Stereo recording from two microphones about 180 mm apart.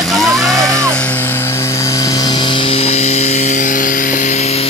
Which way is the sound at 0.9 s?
10° left (ahead or behind).